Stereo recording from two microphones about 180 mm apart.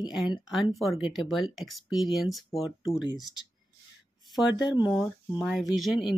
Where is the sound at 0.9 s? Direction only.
25° left (ahead or behind).